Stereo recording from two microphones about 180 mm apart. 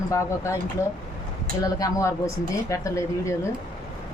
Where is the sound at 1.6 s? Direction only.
20° left (ahead or behind).